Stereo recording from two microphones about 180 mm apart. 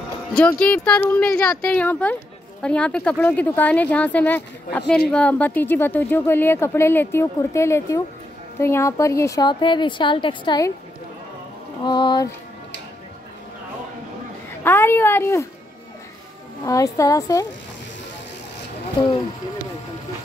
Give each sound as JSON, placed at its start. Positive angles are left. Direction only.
{"t": 0.3, "sound": "a woman's voice", "side_deg": 5}
{"t": 11.8, "sound": "a woman's voice", "side_deg": 25}
{"t": 14.6, "sound": "speech", "side_deg": 10}
{"t": 16.6, "sound": "a woman's voice", "side_deg": 20}
{"t": 18.9, "sound": "a woman's voice", "side_deg": 25}